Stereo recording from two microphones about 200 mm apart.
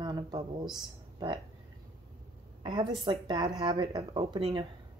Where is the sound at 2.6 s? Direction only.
25° right (ahead or behind).